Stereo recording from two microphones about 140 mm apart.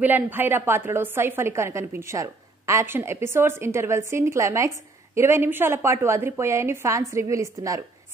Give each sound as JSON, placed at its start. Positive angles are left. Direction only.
{"t": 0.0, "sound": "a woman's voice", "side_deg": -15}